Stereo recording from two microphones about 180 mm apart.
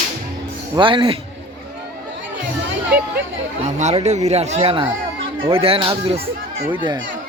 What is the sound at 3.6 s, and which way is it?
Speech, 40° right (ahead or behind).